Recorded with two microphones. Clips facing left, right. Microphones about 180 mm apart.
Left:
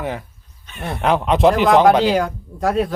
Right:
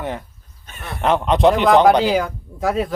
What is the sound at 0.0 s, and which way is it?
Speech, centre (ahead or behind).